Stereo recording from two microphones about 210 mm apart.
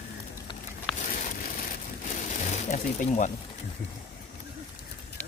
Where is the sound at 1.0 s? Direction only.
35° left (ahead or behind).